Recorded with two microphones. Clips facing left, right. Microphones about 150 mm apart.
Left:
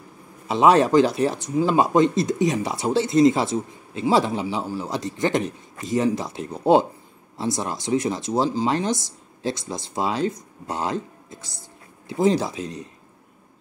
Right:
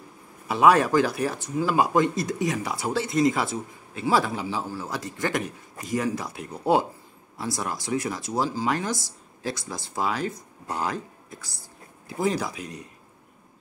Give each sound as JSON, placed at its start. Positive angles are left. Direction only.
{"t": 0.5, "sound": "speech", "side_deg": 25}